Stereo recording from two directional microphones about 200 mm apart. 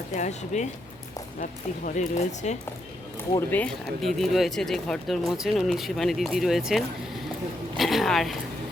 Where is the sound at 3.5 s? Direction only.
5° left (ahead or behind).